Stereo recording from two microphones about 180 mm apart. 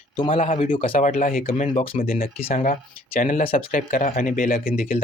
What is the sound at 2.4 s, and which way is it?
Speech, 35° left (ahead or behind).